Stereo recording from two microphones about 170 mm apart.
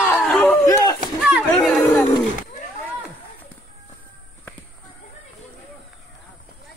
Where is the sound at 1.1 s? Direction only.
Centre (ahead or behind).